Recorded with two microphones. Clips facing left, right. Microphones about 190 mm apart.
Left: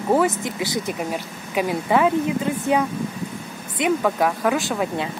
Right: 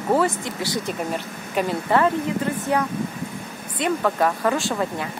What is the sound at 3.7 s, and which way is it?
Speech, 15° left (ahead or behind).